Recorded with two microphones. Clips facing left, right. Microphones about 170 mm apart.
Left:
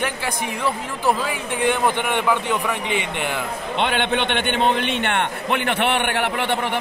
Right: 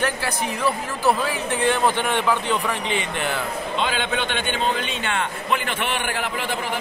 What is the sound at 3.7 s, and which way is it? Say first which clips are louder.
A man's voice: left 4 dB; 65° left (ahead or behind).